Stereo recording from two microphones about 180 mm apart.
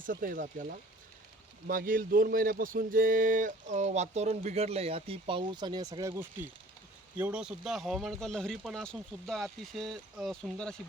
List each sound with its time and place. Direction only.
0.0 s speech: 50° right (ahead or behind); by 10.8 s centre (ahead or behind)